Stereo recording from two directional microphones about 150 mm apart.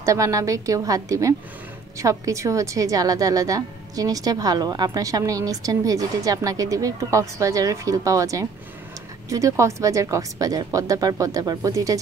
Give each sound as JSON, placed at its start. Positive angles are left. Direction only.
{"t": 0.0, "sound": "a woman's voice", "side_deg": -20}